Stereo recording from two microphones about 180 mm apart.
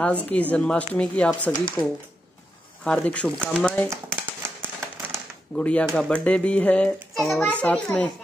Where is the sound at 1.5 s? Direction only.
20° left (ahead or behind).